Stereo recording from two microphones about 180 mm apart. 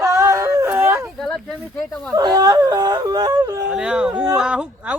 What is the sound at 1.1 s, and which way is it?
Speech, centre (ahead or behind).